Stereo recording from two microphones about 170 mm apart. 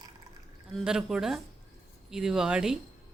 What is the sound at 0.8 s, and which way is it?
Speech, 5° right (ahead or behind).